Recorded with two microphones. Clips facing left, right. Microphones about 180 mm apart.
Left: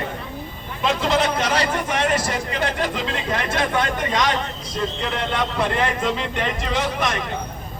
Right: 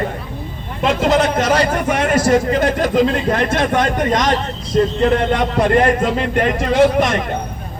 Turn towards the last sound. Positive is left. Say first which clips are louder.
# right 10 dB
turn(degrees=-50)  # may be behind; listen again after turning